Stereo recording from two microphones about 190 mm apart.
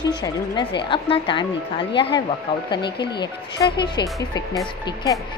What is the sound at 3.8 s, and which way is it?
Speech, 20° left (ahead or behind).